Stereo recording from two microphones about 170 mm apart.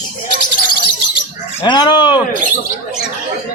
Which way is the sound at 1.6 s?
25° left (ahead or behind).